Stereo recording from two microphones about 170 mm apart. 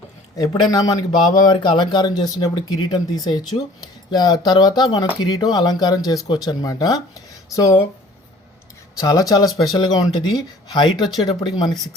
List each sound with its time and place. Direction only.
0.3 s speech: 20° left (ahead or behind)
9.0 s speech: 20° left (ahead or behind)